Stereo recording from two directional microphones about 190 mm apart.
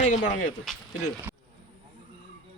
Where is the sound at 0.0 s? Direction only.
40° left (ahead or behind).